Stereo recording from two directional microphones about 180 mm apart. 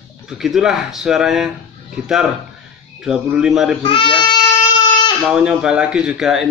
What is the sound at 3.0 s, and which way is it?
Speech, 5° right (ahead or behind).